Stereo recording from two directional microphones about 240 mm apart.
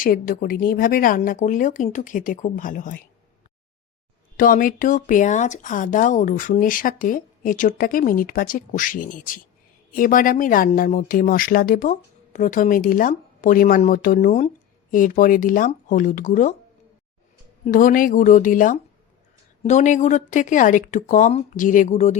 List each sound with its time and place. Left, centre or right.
0.0 s speech: left
4.4 s speech: left
17.7 s speech: left